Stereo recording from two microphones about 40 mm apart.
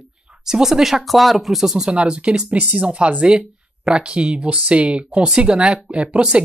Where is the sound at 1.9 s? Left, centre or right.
Right.